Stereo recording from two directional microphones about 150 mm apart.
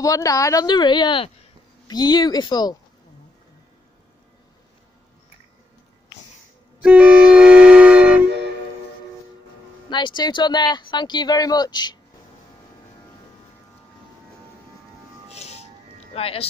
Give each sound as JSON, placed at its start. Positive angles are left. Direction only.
{"t": 0.0, "sound": "speech", "side_deg": 20}
{"t": 6.8, "sound": "music", "side_deg": -5}
{"t": 9.8, "sound": "speech", "side_deg": 30}
{"t": 15.2, "sound": "music", "side_deg": 45}
{"t": 16.1, "sound": "speech", "side_deg": 40}